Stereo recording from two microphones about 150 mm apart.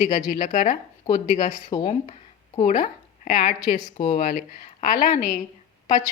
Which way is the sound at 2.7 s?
55° left (ahead or behind).